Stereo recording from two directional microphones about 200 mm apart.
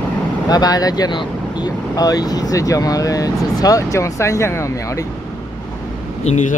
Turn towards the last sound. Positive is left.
turn(degrees=35)  # may be behind; listen again after turning